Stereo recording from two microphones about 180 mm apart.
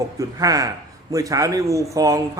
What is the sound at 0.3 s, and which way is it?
A man's voice, 20° right (ahead or behind).